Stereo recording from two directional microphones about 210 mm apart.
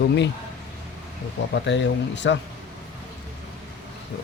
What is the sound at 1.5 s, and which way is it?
Speech, 60° left (ahead or behind).